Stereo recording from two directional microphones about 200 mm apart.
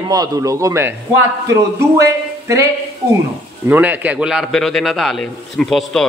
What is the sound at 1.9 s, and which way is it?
Speech, 15° right (ahead or behind).